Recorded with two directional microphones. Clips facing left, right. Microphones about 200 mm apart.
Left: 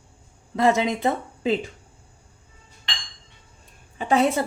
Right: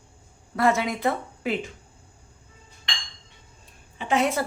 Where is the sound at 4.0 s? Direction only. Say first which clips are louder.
Left 3 dB; 35° left (ahead or behind).